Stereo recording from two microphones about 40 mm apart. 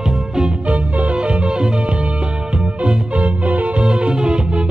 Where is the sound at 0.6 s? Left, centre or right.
Right.